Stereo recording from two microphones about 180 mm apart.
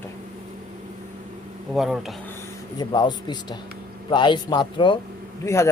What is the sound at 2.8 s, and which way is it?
Speech, 25° left (ahead or behind).